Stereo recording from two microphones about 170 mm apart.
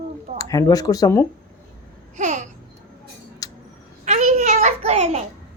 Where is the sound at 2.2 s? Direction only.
45° right (ahead or behind).